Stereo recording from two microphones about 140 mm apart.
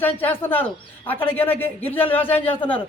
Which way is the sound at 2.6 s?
40° left (ahead or behind).